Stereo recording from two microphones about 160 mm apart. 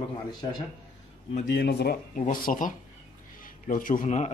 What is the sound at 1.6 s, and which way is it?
Speech, 85° left.